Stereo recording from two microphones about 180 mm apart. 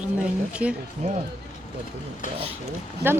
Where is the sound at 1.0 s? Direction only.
40° right (ahead or behind).